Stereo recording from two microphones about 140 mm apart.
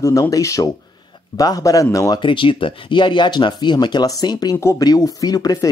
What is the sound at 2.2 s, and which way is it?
Speech, 35° left (ahead or behind).